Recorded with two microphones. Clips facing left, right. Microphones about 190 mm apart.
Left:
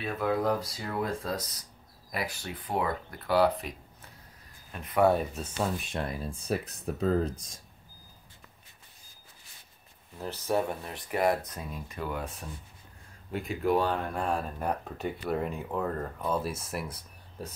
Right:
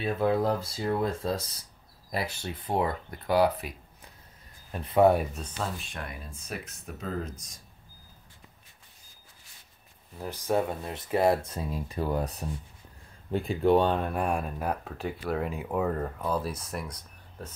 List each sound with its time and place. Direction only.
0.0 s speech: 30° right (ahead or behind); by 3.7 s 10° right (ahead or behind)
4.7 s speech: 30° right (ahead or behind)
5.8 s speech: 25° left (ahead or behind)
10.1 s speech: 10° right (ahead or behind); by 17.5 s 10° left (ahead or behind)